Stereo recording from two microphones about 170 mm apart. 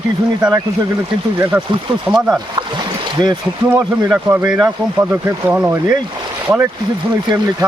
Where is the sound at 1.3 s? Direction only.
10° right (ahead or behind).